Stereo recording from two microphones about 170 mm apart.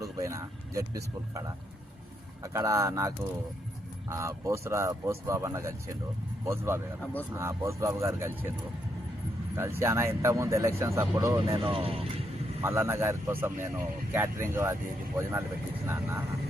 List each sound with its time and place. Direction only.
0.0 s speech: 20° right (ahead or behind)
4.1 s speech: 20° right (ahead or behind)
9.6 s speech: 15° right (ahead or behind)
11.7 s speech: 35° right (ahead or behind)
12.6 s speech: 15° right (ahead or behind)